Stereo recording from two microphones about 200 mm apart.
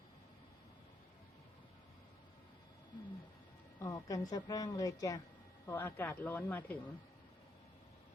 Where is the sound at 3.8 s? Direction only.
15° left (ahead or behind).